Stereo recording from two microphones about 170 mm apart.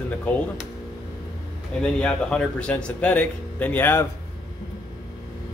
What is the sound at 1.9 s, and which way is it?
Speech, 5° left (ahead or behind).